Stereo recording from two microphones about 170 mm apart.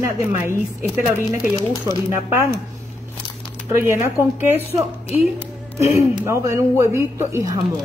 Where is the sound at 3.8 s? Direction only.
15° right (ahead or behind).